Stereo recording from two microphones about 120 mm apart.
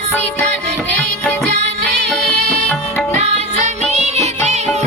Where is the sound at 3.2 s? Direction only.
65° right (ahead or behind).